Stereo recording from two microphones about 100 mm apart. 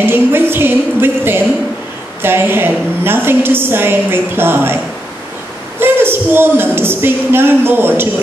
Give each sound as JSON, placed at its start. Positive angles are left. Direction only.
{"t": 0.0, "sound": "a woman's voice", "side_deg": -20}
{"t": 5.8, "sound": "speech", "side_deg": -20}